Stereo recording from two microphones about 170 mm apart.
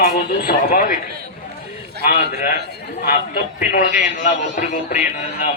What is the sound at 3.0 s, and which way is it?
A man's voice, 50° left (ahead or behind).